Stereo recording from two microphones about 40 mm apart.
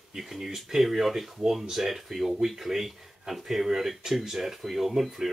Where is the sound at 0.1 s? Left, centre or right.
Centre.